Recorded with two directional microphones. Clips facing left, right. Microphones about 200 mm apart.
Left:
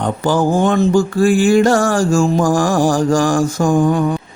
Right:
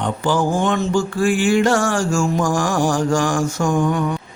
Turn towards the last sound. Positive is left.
turn(degrees=30)  # may be behind; listen again after turning